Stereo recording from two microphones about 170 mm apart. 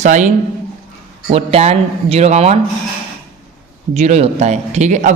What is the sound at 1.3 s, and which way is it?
A man's voice, 40° right (ahead or behind).